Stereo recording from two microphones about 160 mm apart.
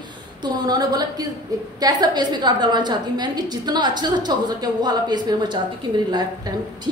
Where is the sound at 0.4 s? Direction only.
25° right (ahead or behind).